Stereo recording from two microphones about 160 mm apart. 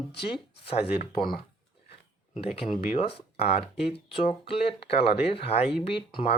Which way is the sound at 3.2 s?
40° left (ahead or behind).